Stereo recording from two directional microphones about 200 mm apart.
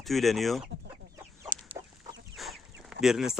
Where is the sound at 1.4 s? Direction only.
20° right (ahead or behind).